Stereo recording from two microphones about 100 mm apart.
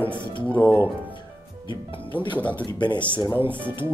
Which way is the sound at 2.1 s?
15° left (ahead or behind).